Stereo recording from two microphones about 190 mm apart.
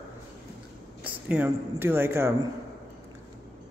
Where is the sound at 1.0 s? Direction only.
5° right (ahead or behind).